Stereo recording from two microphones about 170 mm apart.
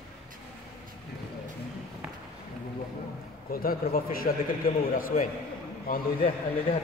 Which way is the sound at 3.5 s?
60° left (ahead or behind).